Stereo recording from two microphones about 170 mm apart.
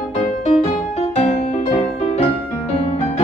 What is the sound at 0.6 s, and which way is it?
Music, 40° left (ahead or behind).